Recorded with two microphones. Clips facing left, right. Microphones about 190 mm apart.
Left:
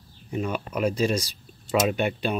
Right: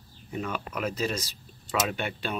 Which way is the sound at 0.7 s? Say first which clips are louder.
Left 6 dB; 30° left (ahead or behind).